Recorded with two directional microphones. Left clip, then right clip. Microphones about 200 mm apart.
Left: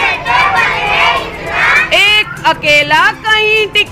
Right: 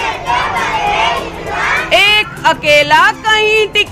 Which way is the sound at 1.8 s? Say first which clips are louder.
Left 1 dB; 5° right (ahead or behind).